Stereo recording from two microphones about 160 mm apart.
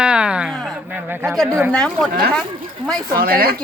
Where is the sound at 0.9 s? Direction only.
15° right (ahead or behind).